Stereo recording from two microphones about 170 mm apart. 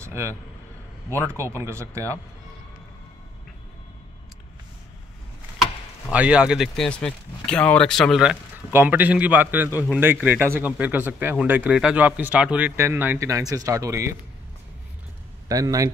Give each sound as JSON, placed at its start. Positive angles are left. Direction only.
{"t": 0.0, "sound": "speech", "side_deg": -15}
{"t": 6.0, "sound": "speech", "side_deg": -5}
{"t": 15.4, "sound": "speech", "side_deg": -20}